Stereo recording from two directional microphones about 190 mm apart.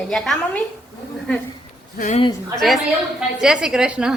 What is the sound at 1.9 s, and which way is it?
Speech, 40° left (ahead or behind).